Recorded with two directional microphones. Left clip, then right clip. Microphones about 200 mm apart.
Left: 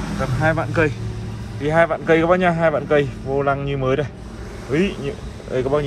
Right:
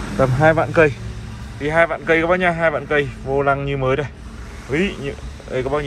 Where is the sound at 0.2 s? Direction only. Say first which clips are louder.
Right 6 dB; 5° left (ahead or behind).